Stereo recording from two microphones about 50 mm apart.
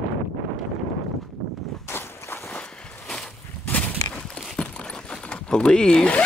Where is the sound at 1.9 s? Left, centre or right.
Left.